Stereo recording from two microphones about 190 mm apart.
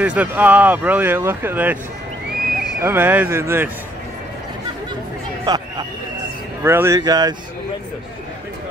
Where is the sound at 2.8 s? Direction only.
10° right (ahead or behind).